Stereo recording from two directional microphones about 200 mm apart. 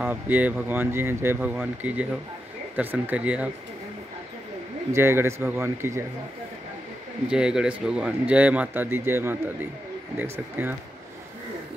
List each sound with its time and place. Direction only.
0.0 s speech: 10° right (ahead or behind)
4.9 s speech: 10° right (ahead or behind)
7.2 s speech: 5° right (ahead or behind)